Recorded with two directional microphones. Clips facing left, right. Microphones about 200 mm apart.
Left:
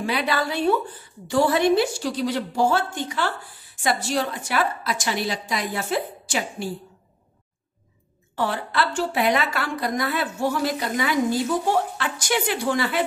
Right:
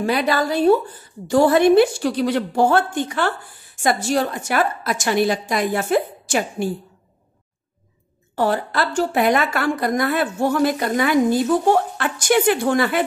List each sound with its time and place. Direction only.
0.0 s a woman's voice: 45° right (ahead or behind)
8.4 s a woman's voice: 40° right (ahead or behind)